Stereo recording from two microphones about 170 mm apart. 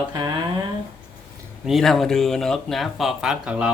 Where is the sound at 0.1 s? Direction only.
25° right (ahead or behind).